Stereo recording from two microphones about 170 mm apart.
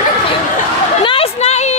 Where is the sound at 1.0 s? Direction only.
35° left (ahead or behind).